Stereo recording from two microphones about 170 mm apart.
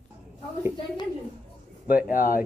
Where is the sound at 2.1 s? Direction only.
55° left (ahead or behind).